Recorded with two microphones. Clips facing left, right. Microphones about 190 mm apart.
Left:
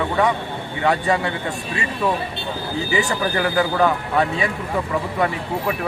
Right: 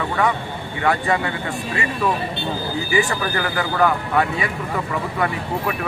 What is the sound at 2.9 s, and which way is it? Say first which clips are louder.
Speech: even; 25° left (ahead or behind).